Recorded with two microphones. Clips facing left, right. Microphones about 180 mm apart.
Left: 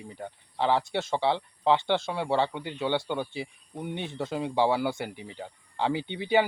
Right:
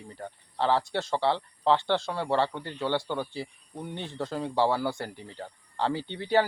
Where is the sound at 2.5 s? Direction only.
10° left (ahead or behind).